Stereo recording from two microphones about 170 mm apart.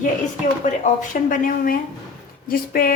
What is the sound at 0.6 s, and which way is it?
A woman's voice, 50° left (ahead or behind).